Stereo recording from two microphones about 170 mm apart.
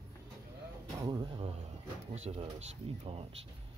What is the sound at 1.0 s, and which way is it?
Speech, 25° right (ahead or behind).